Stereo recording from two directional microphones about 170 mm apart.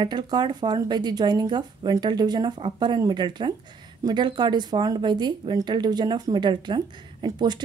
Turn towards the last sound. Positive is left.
turn(degrees=-25)  # may be behind; listen again after turning